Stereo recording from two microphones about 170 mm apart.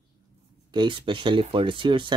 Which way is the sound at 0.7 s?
25° right (ahead or behind).